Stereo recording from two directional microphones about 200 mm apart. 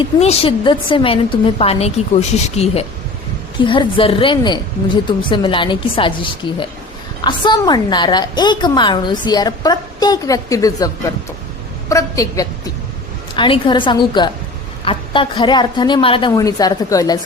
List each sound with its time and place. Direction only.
0.0 s a woman's voice: 30° left (ahead or behind)